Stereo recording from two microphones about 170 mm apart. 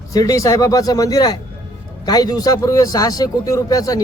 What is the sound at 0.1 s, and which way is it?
Speech, 20° left (ahead or behind).